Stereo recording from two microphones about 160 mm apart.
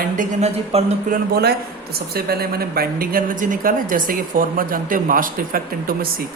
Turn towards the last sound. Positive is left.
turn(degrees=-60)  # may be behind; listen again after turning